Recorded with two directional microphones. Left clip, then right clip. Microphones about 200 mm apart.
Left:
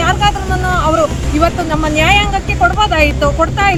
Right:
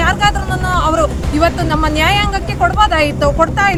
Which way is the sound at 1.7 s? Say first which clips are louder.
Left 2 dB; 15° right (ahead or behind).